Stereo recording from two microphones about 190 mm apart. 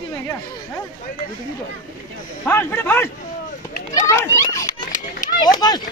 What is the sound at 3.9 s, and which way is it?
Children playing, 15° left (ahead or behind).